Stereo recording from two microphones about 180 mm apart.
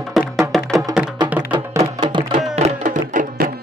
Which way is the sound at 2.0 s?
25° right (ahead or behind).